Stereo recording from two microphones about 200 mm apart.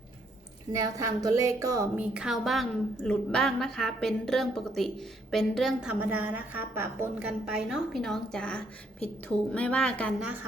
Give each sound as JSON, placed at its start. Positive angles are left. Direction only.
{"t": 0.7, "sound": "a woman's voice", "side_deg": -15}
{"t": 2.1, "sound": "a woman's voice", "side_deg": 0}